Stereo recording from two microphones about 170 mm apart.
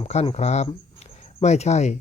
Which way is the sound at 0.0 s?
35° left (ahead or behind).